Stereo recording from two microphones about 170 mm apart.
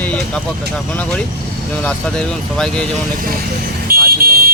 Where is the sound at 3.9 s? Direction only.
60° right (ahead or behind).